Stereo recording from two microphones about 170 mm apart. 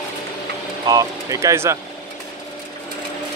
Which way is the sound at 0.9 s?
20° right (ahead or behind).